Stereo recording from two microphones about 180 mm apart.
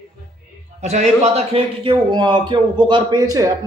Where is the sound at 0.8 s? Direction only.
40° right (ahead or behind).